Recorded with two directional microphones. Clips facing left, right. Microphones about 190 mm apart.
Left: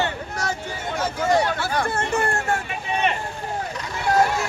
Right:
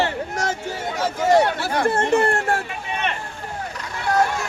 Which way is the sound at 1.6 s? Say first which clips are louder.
Right 4 dB; 35° right (ahead or behind).